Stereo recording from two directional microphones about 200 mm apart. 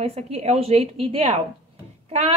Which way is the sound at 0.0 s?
30° right (ahead or behind).